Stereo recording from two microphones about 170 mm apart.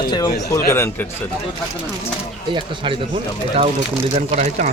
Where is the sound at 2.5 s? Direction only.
30° right (ahead or behind).